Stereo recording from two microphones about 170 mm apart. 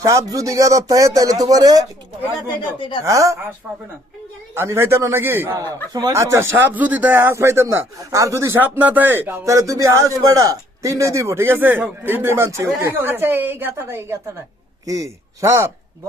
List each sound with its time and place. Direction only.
0.0 s speech: 20° right (ahead or behind)
3.0 s speech: 20° right (ahead or behind)
4.5 s speech: 15° right (ahead or behind)
5.6 s speech: 20° right (ahead or behind)